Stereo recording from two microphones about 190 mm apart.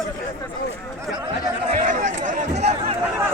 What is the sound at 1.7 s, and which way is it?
Chatter, 40° right (ahead or behind).